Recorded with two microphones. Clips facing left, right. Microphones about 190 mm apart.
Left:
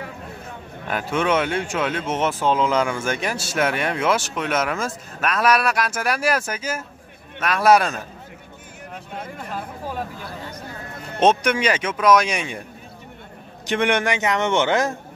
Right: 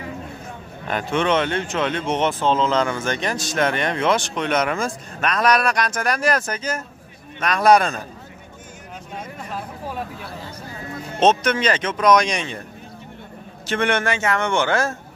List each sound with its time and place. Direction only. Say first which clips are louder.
0.8 s a man's voice: right 1 dB; 5° left (ahead or behind)
11.1 s speech: even; 10° left (ahead or behind)
13.7 s speech: left 1 dB; 15° left (ahead or behind)